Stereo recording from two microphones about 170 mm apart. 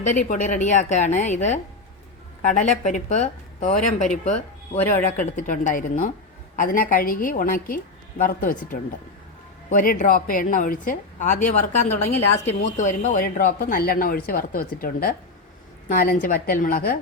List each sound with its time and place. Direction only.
0.0 s a woman's voice: 50° left (ahead or behind)
4.8 s speech: 10° left (ahead or behind)
5.1 s a woman's voice: 50° left (ahead or behind)